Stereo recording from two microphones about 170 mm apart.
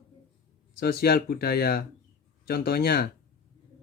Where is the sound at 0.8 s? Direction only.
65° left (ahead or behind).